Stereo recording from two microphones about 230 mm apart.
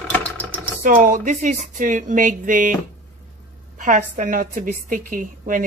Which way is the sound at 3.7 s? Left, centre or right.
Right.